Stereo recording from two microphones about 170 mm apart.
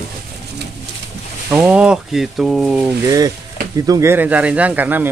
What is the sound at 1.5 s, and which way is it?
Speech, 5° right (ahead or behind).